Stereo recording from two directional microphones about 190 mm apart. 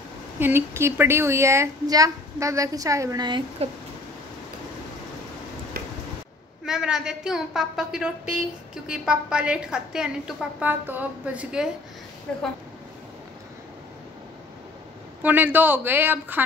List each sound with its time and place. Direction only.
0.4 s speech: 10° right (ahead or behind)
6.6 s a woman's voice: 5° right (ahead or behind)
12.3 s a woman's voice: 5° left (ahead or behind)
15.2 s speech: 10° right (ahead or behind)